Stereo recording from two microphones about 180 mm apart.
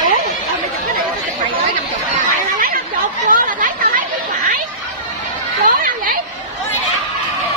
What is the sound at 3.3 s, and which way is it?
Chatter, 50° right (ahead or behind).